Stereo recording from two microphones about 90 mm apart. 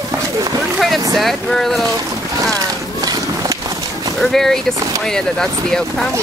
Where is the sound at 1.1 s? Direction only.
Centre (ahead or behind).